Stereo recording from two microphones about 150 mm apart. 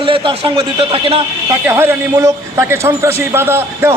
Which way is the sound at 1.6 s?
15° right (ahead or behind).